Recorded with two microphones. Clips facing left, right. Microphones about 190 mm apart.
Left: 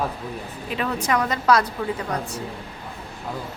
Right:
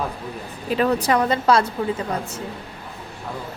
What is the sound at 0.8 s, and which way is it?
Speech, 35° right (ahead or behind).